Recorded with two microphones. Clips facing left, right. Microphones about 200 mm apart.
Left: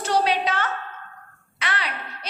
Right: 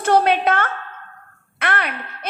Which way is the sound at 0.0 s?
55° right (ahead or behind).